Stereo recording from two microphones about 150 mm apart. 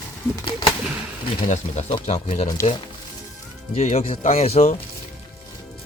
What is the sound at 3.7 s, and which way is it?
Speech, 45° left (ahead or behind).